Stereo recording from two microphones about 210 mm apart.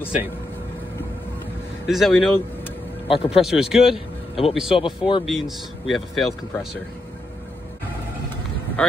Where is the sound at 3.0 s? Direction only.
25° left (ahead or behind).